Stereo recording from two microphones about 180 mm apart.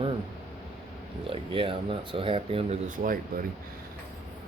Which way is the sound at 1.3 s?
30° right (ahead or behind).